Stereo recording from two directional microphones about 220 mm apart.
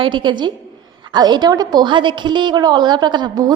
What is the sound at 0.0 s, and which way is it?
A woman's voice, 20° right (ahead or behind).